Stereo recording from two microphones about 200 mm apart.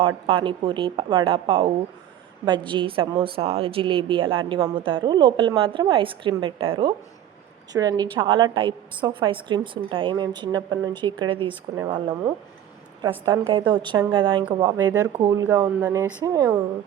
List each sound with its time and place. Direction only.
0.3 s a woman's voice: 25° right (ahead or behind)